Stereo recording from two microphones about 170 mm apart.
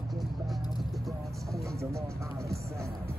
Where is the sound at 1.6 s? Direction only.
15° right (ahead or behind).